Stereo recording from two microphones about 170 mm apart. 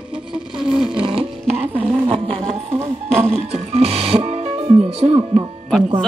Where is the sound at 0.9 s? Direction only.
30° right (ahead or behind).